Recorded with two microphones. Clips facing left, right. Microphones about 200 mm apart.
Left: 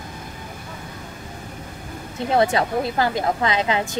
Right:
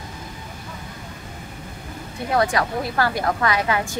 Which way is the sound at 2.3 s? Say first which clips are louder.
Left 2 dB; 25° left (ahead or behind).